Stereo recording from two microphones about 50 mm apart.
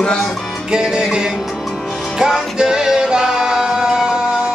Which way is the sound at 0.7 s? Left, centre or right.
Centre.